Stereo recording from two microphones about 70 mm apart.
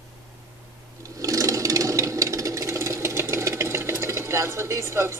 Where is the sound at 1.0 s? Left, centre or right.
Right.